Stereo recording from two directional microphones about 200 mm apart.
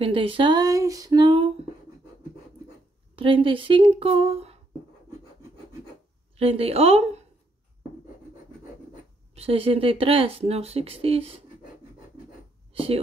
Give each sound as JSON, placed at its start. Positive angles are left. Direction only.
{"t": 0.0, "sound": "speech", "side_deg": -25}
{"t": 3.2, "sound": "speech", "side_deg": -25}
{"t": 6.3, "sound": "speech", "side_deg": -30}
{"t": 9.3, "sound": "speech", "side_deg": -30}
{"t": 12.7, "sound": "speech", "side_deg": -30}